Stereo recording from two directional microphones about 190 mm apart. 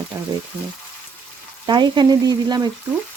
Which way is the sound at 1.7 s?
25° right (ahead or behind).